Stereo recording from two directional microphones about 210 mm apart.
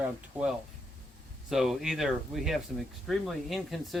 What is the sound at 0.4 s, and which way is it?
Speech, 5° right (ahead or behind).